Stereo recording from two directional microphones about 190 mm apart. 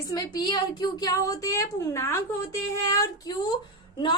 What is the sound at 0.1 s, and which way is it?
A woman's voice, 20° left (ahead or behind).